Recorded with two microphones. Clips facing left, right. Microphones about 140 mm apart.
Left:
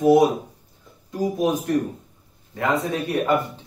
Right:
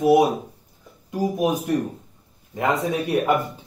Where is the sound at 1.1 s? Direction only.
15° right (ahead or behind).